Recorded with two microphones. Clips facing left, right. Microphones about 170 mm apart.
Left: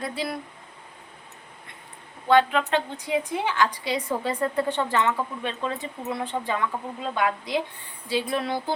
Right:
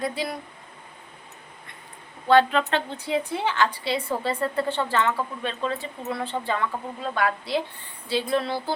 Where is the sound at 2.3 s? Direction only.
15° left (ahead or behind).